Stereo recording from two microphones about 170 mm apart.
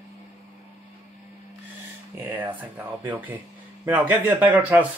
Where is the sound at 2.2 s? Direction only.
20° right (ahead or behind).